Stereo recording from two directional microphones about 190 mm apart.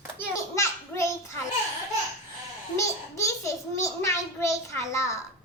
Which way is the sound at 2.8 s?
15° left (ahead or behind).